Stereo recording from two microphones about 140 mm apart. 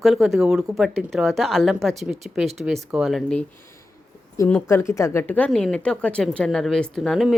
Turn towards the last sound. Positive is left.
turn(degrees=0)  # may be behind; listen again after turning